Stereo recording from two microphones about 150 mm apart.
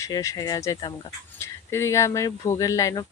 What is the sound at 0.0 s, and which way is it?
Speech, 20° left (ahead or behind).